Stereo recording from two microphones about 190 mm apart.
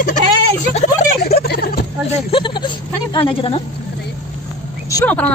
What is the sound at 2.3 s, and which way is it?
Speech, 25° left (ahead or behind).